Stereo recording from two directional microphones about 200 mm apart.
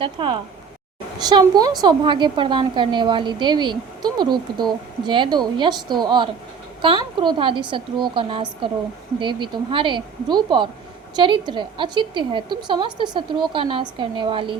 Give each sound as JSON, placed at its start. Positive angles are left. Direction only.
{"t": 0.0, "sound": "a woman's voice", "side_deg": -25}